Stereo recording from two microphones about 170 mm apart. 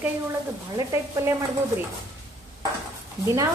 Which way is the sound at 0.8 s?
20° right (ahead or behind).